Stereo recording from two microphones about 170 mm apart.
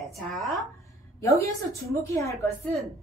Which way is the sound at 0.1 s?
Centre (ahead or behind).